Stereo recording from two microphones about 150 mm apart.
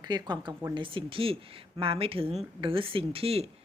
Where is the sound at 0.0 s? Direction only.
30° right (ahead or behind).